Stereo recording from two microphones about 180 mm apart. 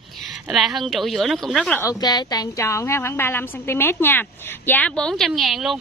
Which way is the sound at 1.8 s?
20° left (ahead or behind).